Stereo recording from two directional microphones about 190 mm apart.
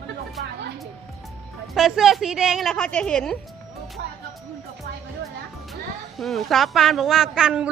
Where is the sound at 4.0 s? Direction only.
60° right (ahead or behind).